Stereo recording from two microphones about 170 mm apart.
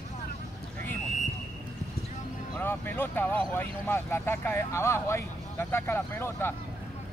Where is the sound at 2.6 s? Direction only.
10° left (ahead or behind).